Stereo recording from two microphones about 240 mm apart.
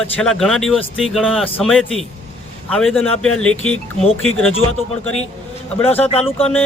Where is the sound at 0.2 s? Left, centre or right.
Centre.